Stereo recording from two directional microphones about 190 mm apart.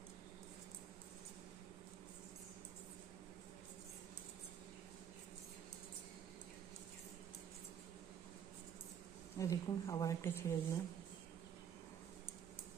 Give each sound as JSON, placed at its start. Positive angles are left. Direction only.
{"t": 9.4, "sound": "speech", "side_deg": 15}